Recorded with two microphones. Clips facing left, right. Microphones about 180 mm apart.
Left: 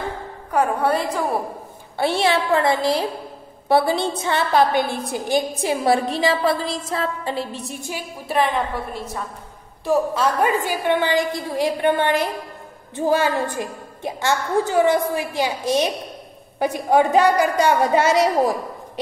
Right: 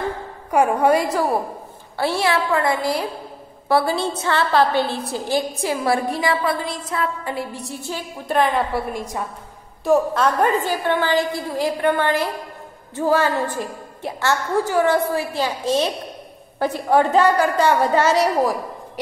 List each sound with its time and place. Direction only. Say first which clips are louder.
0.5 s a woman's voice: right 3 dB; 10° right (ahead or behind)
2.0 s a woman's voice: left 1 dB; 20° left (ahead or behind)
8.3 s a woman's voice: right 2 dB; centre (ahead or behind)
8.9 s a woman's voice: right 2 dB; 15° right (ahead or behind)
9.8 s a woman's voice: right 2 dB; 5° left (ahead or behind)